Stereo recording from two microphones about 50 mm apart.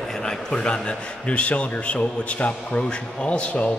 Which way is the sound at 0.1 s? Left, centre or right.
Centre.